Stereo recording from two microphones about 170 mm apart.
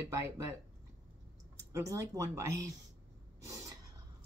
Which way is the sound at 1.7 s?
20° right (ahead or behind).